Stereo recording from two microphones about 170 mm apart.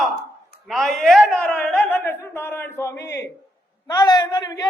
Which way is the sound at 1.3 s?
10° left (ahead or behind).